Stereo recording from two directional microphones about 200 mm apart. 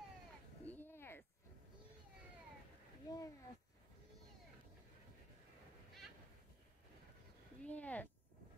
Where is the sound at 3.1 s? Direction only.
20° left (ahead or behind).